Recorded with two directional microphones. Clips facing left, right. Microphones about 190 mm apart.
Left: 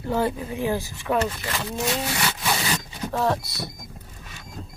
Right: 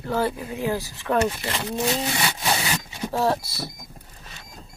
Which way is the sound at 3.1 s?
5° right (ahead or behind).